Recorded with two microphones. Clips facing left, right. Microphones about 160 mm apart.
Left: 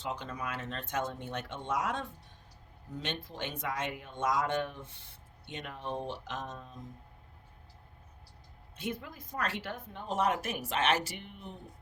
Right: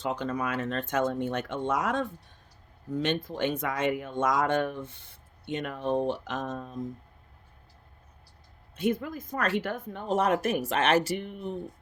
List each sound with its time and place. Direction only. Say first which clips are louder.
0.0 s speech: right 8 dB; 50° right (ahead or behind)
8.8 s speech: right 10 dB; 50° right (ahead or behind)